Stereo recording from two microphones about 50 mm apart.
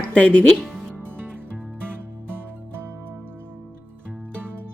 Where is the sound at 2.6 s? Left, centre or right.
Right.